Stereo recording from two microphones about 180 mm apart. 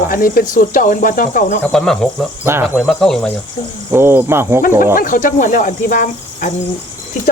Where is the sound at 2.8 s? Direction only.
Centre (ahead or behind).